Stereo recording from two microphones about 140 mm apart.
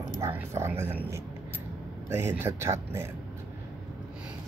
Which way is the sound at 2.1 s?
20° right (ahead or behind).